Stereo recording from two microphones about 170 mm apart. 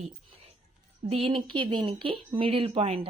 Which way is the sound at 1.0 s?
35° right (ahead or behind).